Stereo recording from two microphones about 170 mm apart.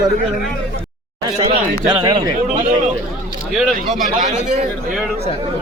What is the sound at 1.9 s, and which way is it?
Speech, 25° right (ahead or behind).